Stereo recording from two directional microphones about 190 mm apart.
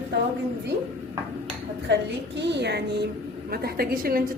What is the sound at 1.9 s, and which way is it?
A woman's voice, 70° right (ahead or behind).